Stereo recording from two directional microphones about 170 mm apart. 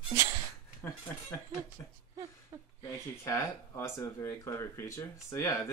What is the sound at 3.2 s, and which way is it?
Speech, 15° left (ahead or behind).